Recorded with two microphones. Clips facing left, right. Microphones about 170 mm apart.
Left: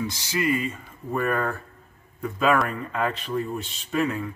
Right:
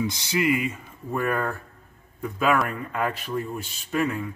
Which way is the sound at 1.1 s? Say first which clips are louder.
Left 1 dB; centre (ahead or behind).